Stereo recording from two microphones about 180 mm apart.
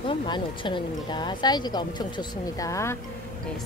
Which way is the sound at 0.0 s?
25° left (ahead or behind).